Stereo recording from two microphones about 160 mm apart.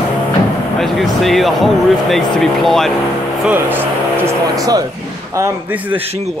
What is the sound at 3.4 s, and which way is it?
Speech, 10° right (ahead or behind).